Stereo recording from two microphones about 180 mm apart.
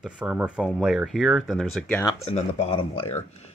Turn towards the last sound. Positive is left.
turn(degrees=30)  # may be behind; listen again after turning